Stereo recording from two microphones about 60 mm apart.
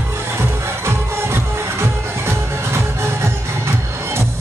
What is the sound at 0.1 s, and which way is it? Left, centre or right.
Music, right.